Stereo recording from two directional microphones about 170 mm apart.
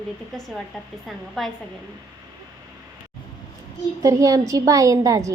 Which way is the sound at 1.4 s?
Centre (ahead or behind).